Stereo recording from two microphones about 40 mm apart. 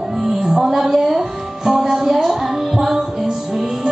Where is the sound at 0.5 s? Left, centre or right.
Centre.